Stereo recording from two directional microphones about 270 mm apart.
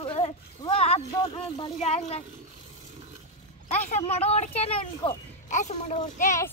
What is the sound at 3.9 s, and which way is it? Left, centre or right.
Speech, left.